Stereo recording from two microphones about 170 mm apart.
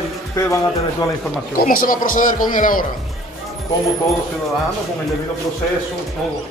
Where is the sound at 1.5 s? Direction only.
55° left (ahead or behind).